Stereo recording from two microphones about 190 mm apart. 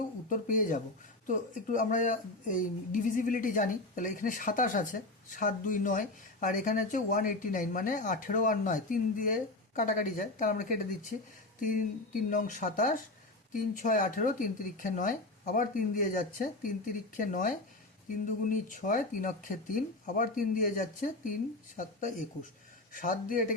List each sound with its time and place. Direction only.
0.3 s speech: 45° left (ahead or behind)
22.9 s speech: 45° left (ahead or behind)